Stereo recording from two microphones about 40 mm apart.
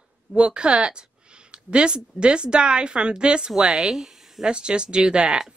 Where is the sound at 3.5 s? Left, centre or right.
Centre.